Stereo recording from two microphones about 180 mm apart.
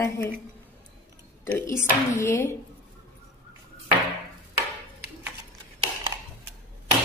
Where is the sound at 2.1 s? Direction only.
15° left (ahead or behind).